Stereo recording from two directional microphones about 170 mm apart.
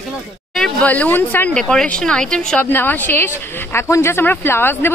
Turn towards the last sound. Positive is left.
turn(degrees=15)  # may be behind; listen again after turning